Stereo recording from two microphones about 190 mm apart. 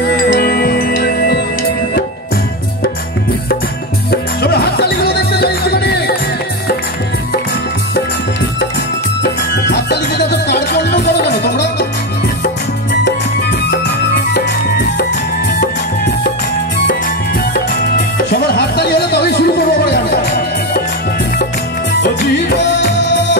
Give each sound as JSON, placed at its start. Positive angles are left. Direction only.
{"t": 0.4, "sound": "music", "side_deg": 55}
{"t": 4.1, "sound": "music", "side_deg": 55}
{"t": 9.2, "sound": "music", "side_deg": 60}
{"t": 13.7, "sound": "music", "side_deg": 60}
{"t": 18.3, "sound": "music", "side_deg": 60}
{"t": 22.0, "sound": "music", "side_deg": 65}